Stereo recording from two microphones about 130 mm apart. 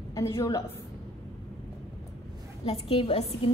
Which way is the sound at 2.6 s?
45° left (ahead or behind).